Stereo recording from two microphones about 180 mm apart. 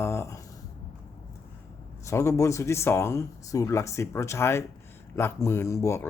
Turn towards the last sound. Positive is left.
turn(degrees=15)  # may be behind; listen again after turning